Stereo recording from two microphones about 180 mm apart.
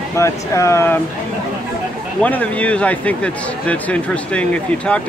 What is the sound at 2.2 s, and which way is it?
Speech, 10° left (ahead or behind).